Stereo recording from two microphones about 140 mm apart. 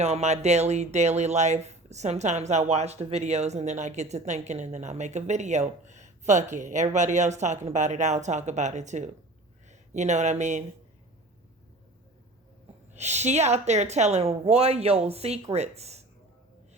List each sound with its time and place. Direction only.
0.0 s speech: 50° right (ahead or behind)
12.9 s a woman's voice: 55° right (ahead or behind)